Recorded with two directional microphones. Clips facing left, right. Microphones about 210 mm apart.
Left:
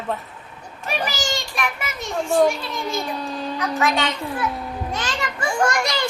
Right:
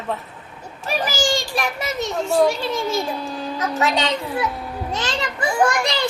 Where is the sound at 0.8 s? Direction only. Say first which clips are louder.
Right 4 dB; 35° right (ahead or behind).